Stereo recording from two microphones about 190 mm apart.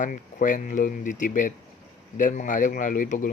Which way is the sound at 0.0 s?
45° left (ahead or behind).